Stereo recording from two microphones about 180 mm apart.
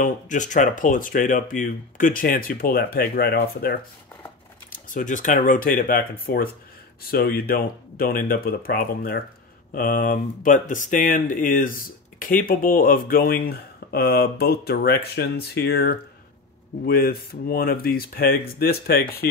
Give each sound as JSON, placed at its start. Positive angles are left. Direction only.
{"t": 0.0, "sound": "speech", "side_deg": 45}
{"t": 4.8, "sound": "speech", "side_deg": 45}